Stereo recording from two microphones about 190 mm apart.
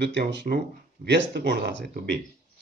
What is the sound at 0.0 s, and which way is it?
Speech, 65° right (ahead or behind).